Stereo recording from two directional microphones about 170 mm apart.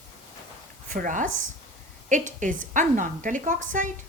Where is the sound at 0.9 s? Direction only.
50° right (ahead or behind).